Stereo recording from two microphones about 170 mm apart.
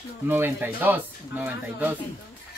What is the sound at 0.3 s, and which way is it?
Speech, 10° right (ahead or behind).